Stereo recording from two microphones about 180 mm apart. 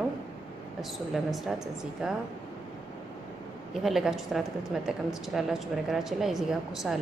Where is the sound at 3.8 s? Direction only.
Centre (ahead or behind).